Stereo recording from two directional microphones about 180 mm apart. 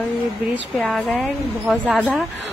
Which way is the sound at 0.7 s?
5° left (ahead or behind).